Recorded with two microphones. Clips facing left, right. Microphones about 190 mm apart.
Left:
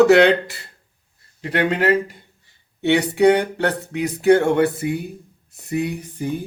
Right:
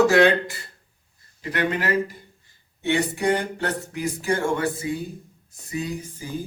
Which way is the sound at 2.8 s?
70° left (ahead or behind).